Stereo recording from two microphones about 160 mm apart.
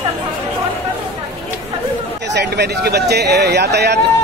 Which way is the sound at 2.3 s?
90° right.